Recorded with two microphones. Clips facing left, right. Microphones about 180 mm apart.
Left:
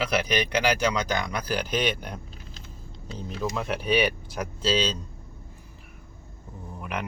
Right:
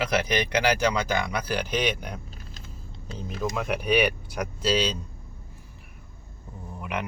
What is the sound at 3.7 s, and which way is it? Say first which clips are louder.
Speech: right 1 dB; 15° right (ahead or behind).